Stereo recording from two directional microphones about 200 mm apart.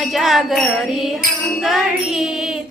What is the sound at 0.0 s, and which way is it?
Music, centre (ahead or behind).